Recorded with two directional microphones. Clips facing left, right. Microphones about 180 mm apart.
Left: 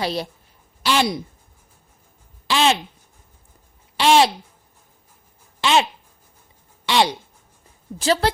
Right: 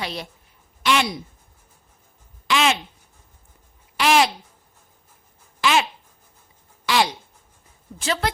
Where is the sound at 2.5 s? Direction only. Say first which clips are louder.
Left 2 dB; 30° left (ahead or behind).